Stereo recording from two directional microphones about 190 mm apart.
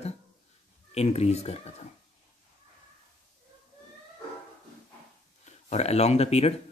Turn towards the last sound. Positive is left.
turn(degrees=35)  # may be behind; listen again after turning